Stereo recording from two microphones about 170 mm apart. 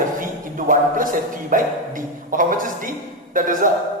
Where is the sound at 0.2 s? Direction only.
50° right (ahead or behind).